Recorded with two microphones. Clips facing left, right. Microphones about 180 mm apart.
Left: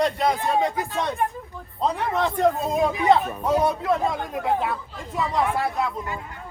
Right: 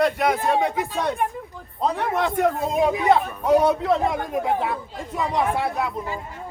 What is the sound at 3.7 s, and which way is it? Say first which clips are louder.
Speech: right 3 dB; 25° right (ahead or behind).